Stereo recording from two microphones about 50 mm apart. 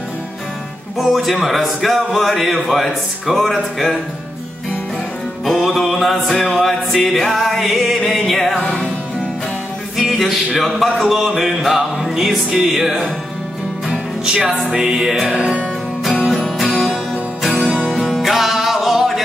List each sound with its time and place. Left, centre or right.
0.9 s music: centre
5.4 s music: centre
8.5 s music: centre
9.9 s music: centre
13.8 s music: centre
16.3 s music: centre
17.8 s music: centre